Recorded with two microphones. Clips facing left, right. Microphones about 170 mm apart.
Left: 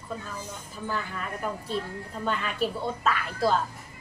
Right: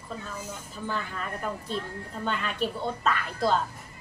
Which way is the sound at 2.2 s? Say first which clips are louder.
Left 1 dB; 5° left (ahead or behind).